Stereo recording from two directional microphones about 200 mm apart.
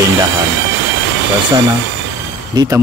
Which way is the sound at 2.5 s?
20° right (ahead or behind).